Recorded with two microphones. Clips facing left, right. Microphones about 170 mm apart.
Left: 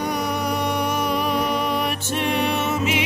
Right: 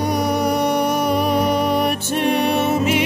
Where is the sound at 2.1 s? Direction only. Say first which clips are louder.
Right 4 dB; 45° right (ahead or behind).